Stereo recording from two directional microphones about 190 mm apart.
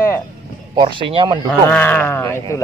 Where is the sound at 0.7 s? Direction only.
25° right (ahead or behind).